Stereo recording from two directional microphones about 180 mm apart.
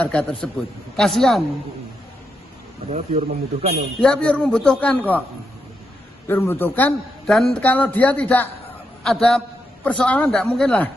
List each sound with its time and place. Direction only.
0.0 s a man's voice: 5° left (ahead or behind)
2.9 s speech: 35° right (ahead or behind)
4.0 s a man's voice: 5° left (ahead or behind)
6.2 s a man's voice: 10° left (ahead or behind)